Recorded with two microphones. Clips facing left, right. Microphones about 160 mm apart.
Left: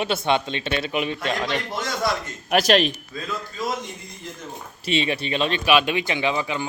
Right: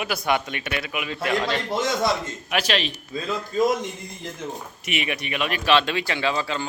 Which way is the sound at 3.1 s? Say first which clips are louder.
Right 3 dB; 25° right (ahead or behind).